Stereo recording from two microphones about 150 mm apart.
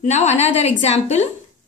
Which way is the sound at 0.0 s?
45° left (ahead or behind).